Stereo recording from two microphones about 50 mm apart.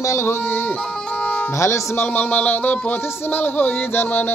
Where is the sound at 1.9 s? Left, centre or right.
Left.